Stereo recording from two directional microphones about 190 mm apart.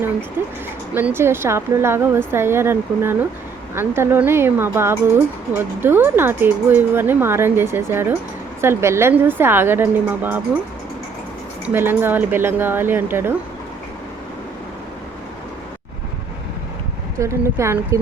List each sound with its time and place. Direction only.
0.4 s speech: 10° right (ahead or behind)
11.6 s speech: 10° right (ahead or behind)
17.2 s speech: 15° right (ahead or behind)